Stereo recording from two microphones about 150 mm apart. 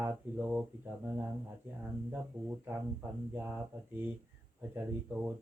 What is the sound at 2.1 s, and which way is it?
Speech, 10° right (ahead or behind).